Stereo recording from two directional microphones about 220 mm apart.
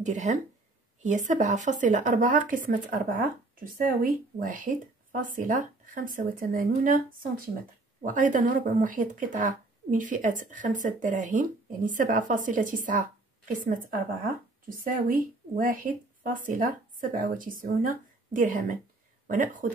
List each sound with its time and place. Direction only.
0.0 s speech: 30° right (ahead or behind)
14.7 s speech: 40° right (ahead or behind)